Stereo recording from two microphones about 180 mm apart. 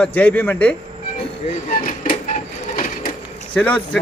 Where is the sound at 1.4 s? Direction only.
40° left (ahead or behind).